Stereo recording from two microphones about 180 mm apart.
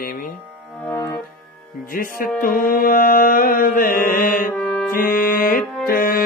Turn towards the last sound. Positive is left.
turn(degrees=55)  # may be behind; listen again after turning